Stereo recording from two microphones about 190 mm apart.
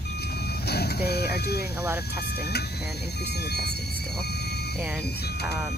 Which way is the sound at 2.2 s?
60° left (ahead or behind).